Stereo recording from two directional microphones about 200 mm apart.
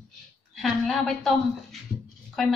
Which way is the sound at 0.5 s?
Centre (ahead or behind).